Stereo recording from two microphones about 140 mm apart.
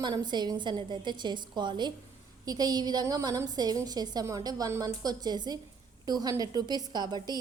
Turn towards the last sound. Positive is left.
turn(degrees=-30)  # may be behind; listen again after turning